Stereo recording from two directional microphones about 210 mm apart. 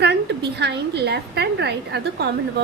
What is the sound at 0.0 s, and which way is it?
A woman's voice, 50° right (ahead or behind).